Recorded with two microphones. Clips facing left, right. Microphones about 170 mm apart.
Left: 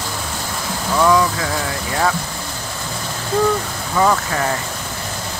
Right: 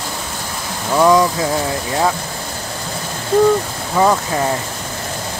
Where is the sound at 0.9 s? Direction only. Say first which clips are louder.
Right 3 dB; 20° right (ahead or behind).